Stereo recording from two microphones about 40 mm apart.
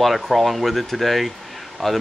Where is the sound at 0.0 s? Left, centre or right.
Centre.